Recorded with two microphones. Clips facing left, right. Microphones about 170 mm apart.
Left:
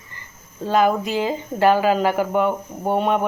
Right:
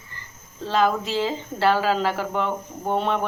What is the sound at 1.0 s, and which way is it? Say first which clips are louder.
Speech: left 2 dB; 55° left (ahead or behind).